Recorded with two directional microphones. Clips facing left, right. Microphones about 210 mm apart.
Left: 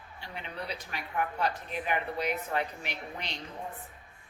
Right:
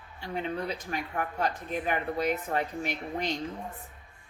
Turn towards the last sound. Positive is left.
turn(degrees=-45)  # may be behind; listen again after turning